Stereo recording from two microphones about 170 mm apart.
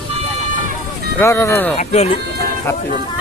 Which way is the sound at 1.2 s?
15° left (ahead or behind).